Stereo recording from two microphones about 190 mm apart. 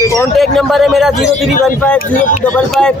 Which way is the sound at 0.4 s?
Centre (ahead or behind).